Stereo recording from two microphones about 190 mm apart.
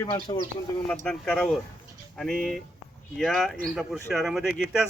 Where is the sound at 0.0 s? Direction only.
20° left (ahead or behind).